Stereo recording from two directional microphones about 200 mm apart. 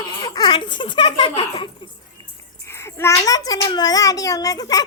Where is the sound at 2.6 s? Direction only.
10° left (ahead or behind).